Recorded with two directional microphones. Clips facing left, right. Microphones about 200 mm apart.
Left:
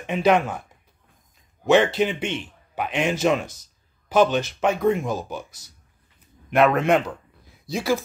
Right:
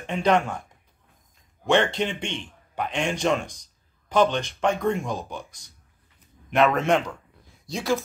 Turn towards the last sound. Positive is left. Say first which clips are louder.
# left 2 dB
turn(degrees=0)  # may be behind; listen again after turning